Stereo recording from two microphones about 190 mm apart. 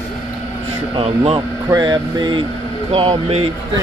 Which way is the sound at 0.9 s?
30° right (ahead or behind).